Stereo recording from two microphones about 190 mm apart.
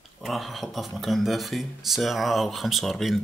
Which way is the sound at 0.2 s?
Centre (ahead or behind).